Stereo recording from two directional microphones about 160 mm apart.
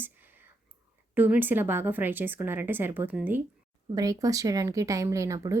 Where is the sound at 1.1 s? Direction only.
10° right (ahead or behind).